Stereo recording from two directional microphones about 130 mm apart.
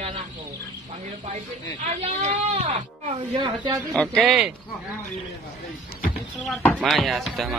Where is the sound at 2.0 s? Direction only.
60° right (ahead or behind).